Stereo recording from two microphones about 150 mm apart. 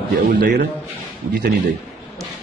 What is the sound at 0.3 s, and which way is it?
Speech, 80° right.